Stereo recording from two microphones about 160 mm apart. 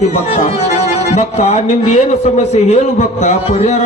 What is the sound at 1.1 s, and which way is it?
Speech, 45° left (ahead or behind).